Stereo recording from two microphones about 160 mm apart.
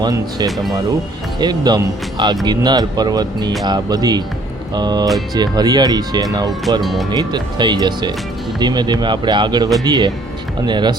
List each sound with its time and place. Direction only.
0.0 s speech: 25° right (ahead or behind)
0.4 s speech: centre (ahead or behind)
1.4 s speech: 25° right (ahead or behind)
6.8 s speech: centre (ahead or behind)
7.1 s speech: 25° right (ahead or behind)